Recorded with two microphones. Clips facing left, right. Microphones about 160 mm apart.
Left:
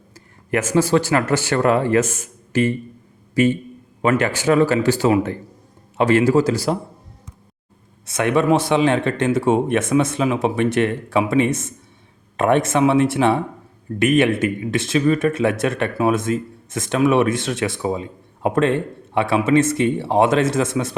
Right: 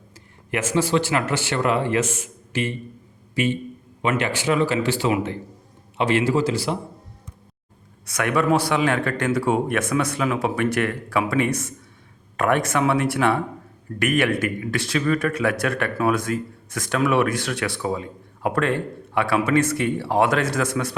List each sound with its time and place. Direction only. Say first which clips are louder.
0.5 s a man's voice: left 4 dB; 40° left (ahead or behind)
8.0 s speech: left 4 dB; 25° left (ahead or behind)